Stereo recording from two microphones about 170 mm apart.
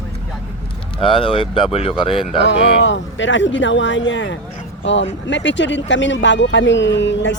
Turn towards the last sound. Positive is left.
turn(degrees=90)